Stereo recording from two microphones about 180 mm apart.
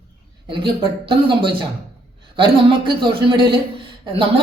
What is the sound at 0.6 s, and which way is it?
Speech, 25° right (ahead or behind).